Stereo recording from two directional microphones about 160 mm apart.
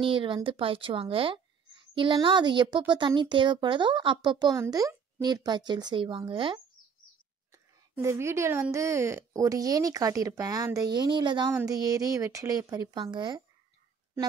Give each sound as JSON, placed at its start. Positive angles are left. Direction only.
{"t": 0.0, "sound": "speech", "side_deg": -35}
{"t": 7.5, "sound": "speech", "side_deg": -15}